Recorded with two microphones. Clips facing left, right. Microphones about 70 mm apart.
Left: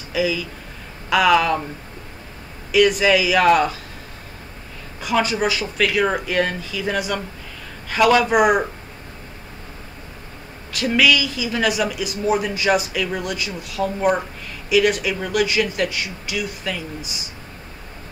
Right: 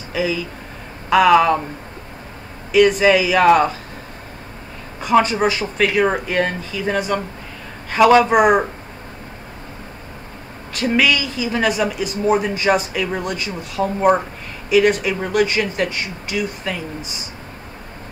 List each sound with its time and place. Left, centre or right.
0.1 s speech: right
1.3 s speech: right
3.0 s speech: right
5.0 s speech: right
10.8 s speech: right